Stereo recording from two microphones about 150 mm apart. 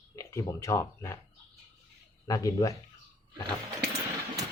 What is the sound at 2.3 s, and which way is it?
Speech, 20° left (ahead or behind).